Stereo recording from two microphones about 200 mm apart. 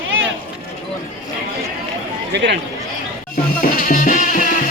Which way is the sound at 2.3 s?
60° right (ahead or behind).